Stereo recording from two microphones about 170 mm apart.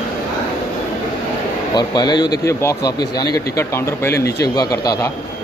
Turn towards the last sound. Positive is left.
turn(degrees=20)  # may be behind; listen again after turning